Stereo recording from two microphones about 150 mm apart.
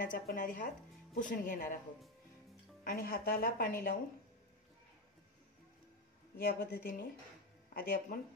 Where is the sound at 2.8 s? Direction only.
75° left (ahead or behind).